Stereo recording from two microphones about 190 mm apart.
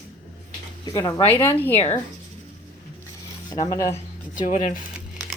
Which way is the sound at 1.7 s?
30° left (ahead or behind).